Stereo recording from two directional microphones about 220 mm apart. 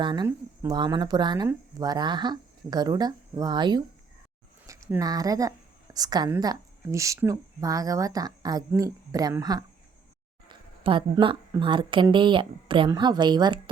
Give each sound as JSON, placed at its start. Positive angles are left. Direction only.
{"t": 0.0, "sound": "a woman's voice", "side_deg": -20}